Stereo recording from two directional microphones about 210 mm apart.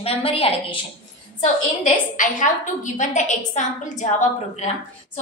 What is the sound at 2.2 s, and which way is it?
A woman's voice, 35° left (ahead or behind).